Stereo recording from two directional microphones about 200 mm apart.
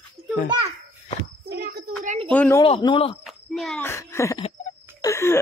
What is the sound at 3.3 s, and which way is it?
Speech, centre (ahead or behind).